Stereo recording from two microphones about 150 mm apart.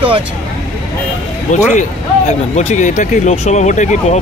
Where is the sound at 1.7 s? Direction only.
50° left (ahead or behind).